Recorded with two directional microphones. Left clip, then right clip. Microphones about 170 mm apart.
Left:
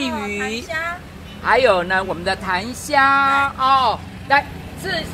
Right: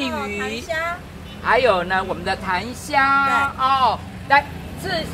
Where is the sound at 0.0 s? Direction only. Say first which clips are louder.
Left 1 dB; 50° left (ahead or behind).